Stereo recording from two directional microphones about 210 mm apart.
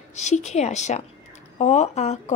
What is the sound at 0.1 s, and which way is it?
A woman's voice, 35° left (ahead or behind).